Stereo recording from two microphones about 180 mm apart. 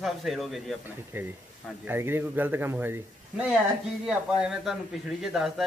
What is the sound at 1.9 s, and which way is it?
Speech, 10° right (ahead or behind).